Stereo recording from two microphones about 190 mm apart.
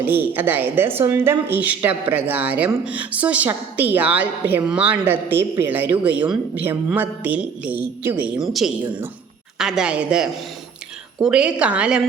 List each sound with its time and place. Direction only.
0.0 s a woman's voice: 10° right (ahead or behind)